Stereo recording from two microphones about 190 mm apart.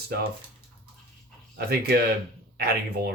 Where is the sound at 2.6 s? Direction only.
55° right (ahead or behind).